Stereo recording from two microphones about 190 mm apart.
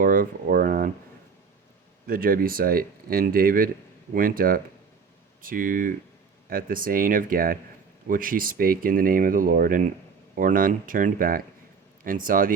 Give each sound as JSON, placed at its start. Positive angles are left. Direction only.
{"t": 0.0, "sound": "speech", "side_deg": -45}
{"t": 2.0, "sound": "speech", "side_deg": -50}